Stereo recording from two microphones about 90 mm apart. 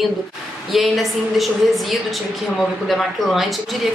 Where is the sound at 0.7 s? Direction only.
Centre (ahead or behind).